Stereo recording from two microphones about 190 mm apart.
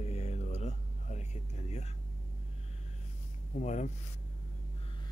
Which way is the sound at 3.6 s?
40° left (ahead or behind).